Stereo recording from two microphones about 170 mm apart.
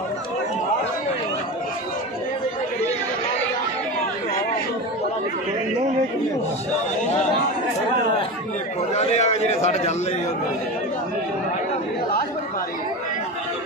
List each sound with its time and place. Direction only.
8.9 s a man's voice: 40° left (ahead or behind)